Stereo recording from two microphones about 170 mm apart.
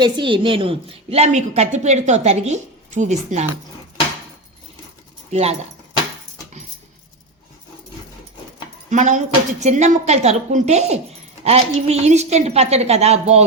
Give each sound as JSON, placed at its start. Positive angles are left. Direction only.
{"t": 0.0, "sound": "a woman's voice", "side_deg": -30}
{"t": 5.3, "sound": "a woman's voice", "side_deg": -40}
{"t": 8.9, "sound": "a woman's voice", "side_deg": -45}